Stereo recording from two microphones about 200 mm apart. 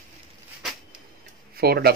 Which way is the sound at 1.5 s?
50° right (ahead or behind).